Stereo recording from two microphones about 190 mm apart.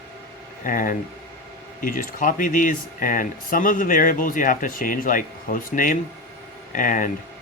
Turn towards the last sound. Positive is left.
turn(degrees=45)  # may be behind; listen again after turning